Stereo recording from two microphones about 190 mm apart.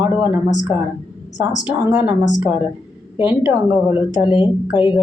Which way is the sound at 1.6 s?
10° right (ahead or behind).